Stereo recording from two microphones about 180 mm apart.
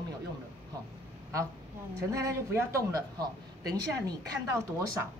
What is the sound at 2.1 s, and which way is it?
Speech, 15° right (ahead or behind).